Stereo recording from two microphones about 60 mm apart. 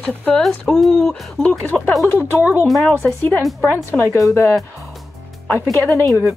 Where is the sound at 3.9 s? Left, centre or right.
Centre.